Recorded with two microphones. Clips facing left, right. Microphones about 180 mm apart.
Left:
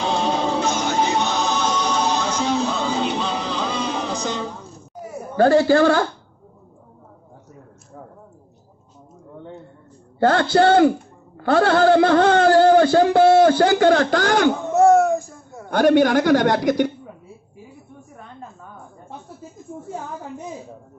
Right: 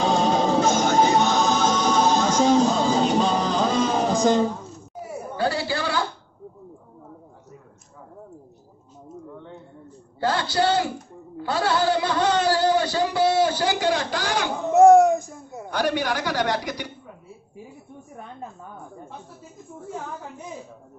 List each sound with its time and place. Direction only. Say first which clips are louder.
0.0 s music: right 1 dB; 45° right (ahead or behind)
5.4 s a woman's voice: left 12 dB; 50° left (ahead or behind)
10.2 s a woman's voice: left 7 dB; 55° left (ahead or behind)
14.7 s a sound: right 4 dB; 15° right (ahead or behind)
15.7 s a woman's voice: left 10 dB; 50° left (ahead or behind)